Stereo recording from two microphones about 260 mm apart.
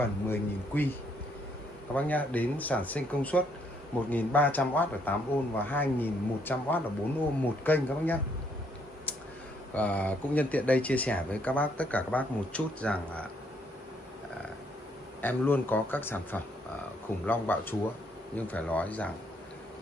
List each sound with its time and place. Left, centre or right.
0.0 s speech: centre
2.0 s speech: centre
9.8 s speech: centre
15.2 s speech: centre